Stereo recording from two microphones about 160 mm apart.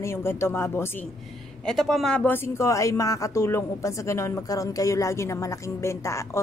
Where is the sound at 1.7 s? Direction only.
Centre (ahead or behind).